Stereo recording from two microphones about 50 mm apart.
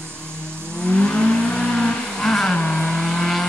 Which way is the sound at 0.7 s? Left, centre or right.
Left.